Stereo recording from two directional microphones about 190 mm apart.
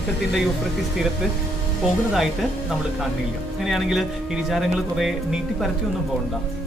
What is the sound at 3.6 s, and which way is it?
Speech, centre (ahead or behind).